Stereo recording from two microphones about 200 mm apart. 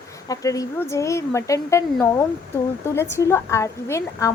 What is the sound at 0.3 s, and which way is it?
A woman's voice, 15° left (ahead or behind).